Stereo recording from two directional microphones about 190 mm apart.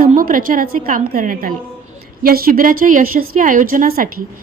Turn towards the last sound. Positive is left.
turn(degrees=-45)  # may be behind; listen again after turning